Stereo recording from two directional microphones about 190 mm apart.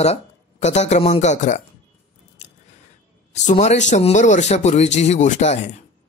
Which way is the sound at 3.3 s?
40° left (ahead or behind).